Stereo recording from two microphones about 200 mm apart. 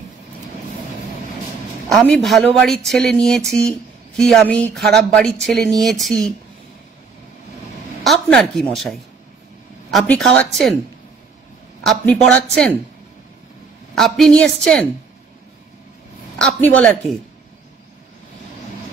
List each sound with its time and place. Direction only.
1.9 s speech: 5° left (ahead or behind)
4.7 s speech: 55° right (ahead or behind)
5.1 s speech: centre (ahead or behind)
8.0 s speech: centre (ahead or behind)
11.8 s speech: 5° left (ahead or behind)
13.9 s speech: centre (ahead or behind)
16.3 s speech: 5° left (ahead or behind)